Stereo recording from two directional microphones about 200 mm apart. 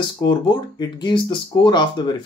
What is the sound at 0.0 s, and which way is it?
Speech, 20° left (ahead or behind).